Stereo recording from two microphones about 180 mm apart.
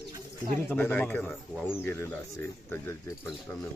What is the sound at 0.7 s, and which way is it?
Speech, 10° left (ahead or behind).